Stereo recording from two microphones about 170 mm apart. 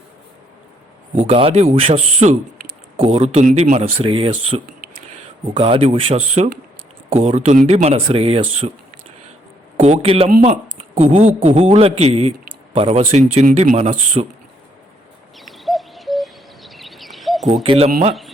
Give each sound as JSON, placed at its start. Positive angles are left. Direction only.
{"t": 1.2, "sound": "speech", "side_deg": -35}
{"t": 9.7, "sound": "speech", "side_deg": -40}
{"t": 15.4, "sound": "bird", "side_deg": 0}
{"t": 17.5, "sound": "speech", "side_deg": -30}